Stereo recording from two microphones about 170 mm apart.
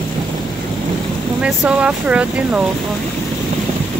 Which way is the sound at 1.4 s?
5° right (ahead or behind).